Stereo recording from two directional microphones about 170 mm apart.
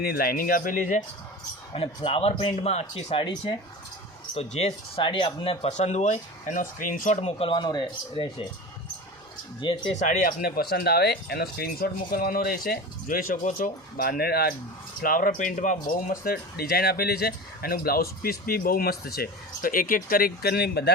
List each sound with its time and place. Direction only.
0.0 s speech: 60° left (ahead or behind)
1.7 s speech: 30° left (ahead or behind)
9.6 s speech: 30° left (ahead or behind)
9.9 s speech: 45° left (ahead or behind); by 14.5 s 65° left (ahead or behind)
15.0 s speech: 55° left (ahead or behind); by 20.9 s 75° left (ahead or behind)